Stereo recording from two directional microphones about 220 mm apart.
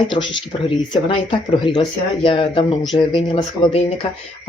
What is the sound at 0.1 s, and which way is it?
Speech, 20° left (ahead or behind).